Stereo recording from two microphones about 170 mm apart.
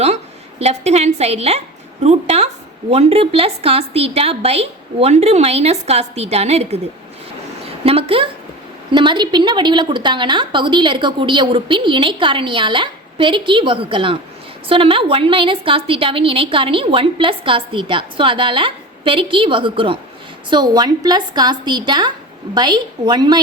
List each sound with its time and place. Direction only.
0.6 s a woman's voice: 40° right (ahead or behind)
7.9 s a woman's voice: 35° right (ahead or behind)